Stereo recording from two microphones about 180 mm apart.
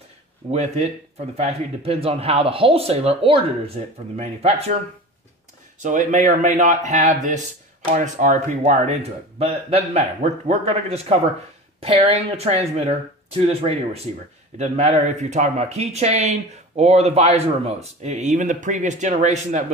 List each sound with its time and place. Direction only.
0.5 s speech: 35° right (ahead or behind)
5.8 s speech: 45° right (ahead or behind)